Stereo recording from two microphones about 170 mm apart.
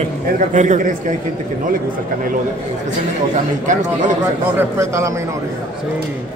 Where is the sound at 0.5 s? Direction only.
45° right (ahead or behind).